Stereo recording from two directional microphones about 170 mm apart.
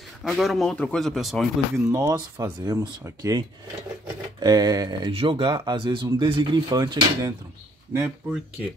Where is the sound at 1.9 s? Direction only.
20° right (ahead or behind).